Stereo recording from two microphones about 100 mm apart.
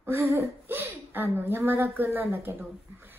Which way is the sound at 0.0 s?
25° right (ahead or behind).